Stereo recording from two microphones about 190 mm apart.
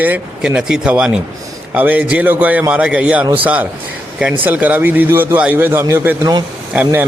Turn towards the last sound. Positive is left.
turn(degrees=-10)  # may be behind; listen again after turning